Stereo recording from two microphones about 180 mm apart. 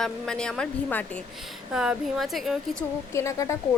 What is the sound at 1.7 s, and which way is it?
A woman's voice, 5° right (ahead or behind).